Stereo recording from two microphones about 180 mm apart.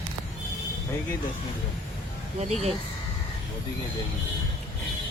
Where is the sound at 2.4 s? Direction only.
40° right (ahead or behind).